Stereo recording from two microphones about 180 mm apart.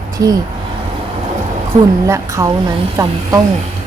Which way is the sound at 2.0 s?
15° right (ahead or behind).